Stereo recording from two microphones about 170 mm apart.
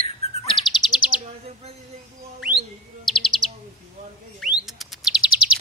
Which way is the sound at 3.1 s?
Centre (ahead or behind).